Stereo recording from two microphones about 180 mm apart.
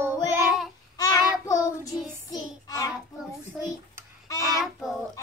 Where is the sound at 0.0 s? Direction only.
15° right (ahead or behind).